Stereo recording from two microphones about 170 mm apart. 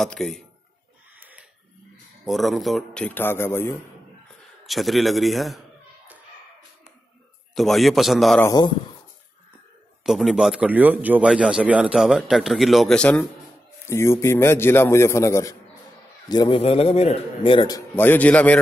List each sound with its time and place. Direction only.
0.0 s a man's voice: centre (ahead or behind)
2.2 s a man's voice: centre (ahead or behind)
4.6 s a man's voice: centre (ahead or behind)
7.5 s a man's voice: centre (ahead or behind)
8.4 s speech: 20° left (ahead or behind)
10.0 s a man's voice: centre (ahead or behind); by 17.8 s 25° left (ahead or behind)
17.9 s a man's voice: 10° left (ahead or behind)